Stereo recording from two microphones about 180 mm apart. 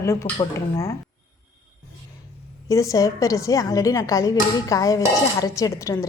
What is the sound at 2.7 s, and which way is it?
A woman's voice, 15° left (ahead or behind).